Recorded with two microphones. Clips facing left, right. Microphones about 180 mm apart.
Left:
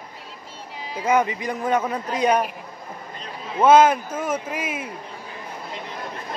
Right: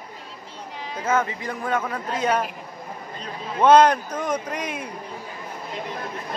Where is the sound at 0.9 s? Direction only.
15° left (ahead or behind).